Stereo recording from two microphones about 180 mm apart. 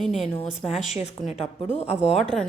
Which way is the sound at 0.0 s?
Centre (ahead or behind).